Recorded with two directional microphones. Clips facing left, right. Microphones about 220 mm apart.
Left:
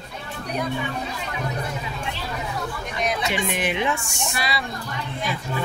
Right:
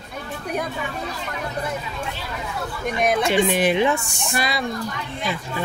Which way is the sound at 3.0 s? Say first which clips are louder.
Right 6 dB; 50° right (ahead or behind).